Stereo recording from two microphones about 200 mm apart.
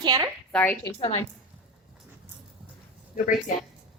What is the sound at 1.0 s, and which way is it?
Speech, 30° left (ahead or behind).